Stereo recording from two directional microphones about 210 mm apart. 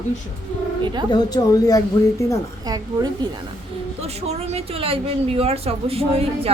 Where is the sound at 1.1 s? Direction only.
15° left (ahead or behind).